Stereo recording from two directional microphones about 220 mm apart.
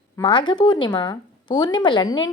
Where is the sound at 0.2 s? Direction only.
20° left (ahead or behind).